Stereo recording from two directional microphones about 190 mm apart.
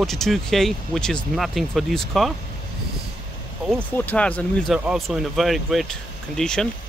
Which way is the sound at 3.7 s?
10° left (ahead or behind).